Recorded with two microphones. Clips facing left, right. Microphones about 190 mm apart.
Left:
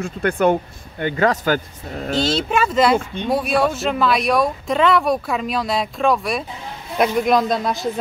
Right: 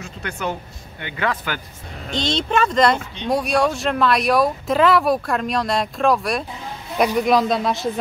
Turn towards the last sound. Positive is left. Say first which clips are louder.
# even
turn(degrees=0)  # may be behind; listen again after turning